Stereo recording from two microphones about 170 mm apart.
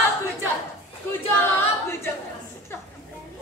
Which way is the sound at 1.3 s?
10° left (ahead or behind).